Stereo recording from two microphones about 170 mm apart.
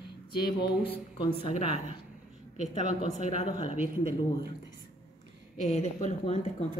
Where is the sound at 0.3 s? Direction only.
25° left (ahead or behind).